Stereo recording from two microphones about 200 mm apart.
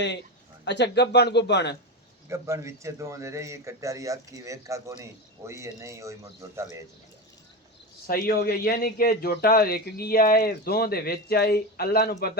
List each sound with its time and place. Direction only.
0.6 s speech: 60° left (ahead or behind)
2.3 s speech: 15° right (ahead or behind)
8.0 s a man's voice: 50° left (ahead or behind)